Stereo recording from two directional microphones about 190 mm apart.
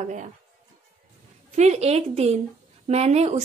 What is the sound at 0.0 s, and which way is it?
Speech, 40° right (ahead or behind).